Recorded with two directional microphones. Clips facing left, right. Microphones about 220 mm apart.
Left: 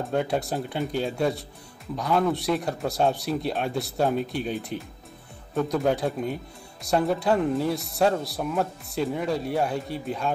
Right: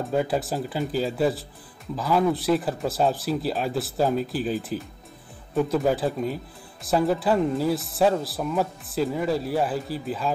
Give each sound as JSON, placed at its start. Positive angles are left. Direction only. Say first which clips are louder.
{"t": 0.0, "sound": "speech", "louder": "right 1 dB", "side_deg": 0}